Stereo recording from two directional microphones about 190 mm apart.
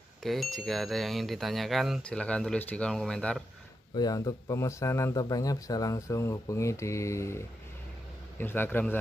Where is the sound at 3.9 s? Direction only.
20° left (ahead or behind).